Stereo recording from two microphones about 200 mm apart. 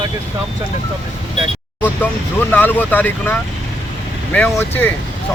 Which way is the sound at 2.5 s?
10° left (ahead or behind).